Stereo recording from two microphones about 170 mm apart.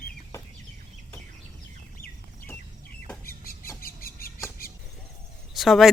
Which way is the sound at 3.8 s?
60° left (ahead or behind).